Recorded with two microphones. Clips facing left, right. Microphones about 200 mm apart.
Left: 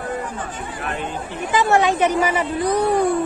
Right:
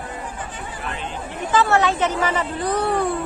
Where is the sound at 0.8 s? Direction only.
50° left (ahead or behind).